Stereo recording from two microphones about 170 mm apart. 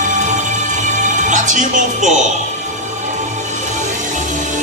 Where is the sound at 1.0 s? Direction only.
45° right (ahead or behind).